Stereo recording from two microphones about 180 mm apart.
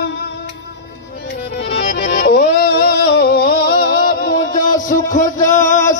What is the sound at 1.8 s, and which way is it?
Music, 60° left (ahead or behind).